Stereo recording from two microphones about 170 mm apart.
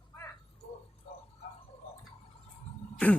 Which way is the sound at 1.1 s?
35° left (ahead or behind).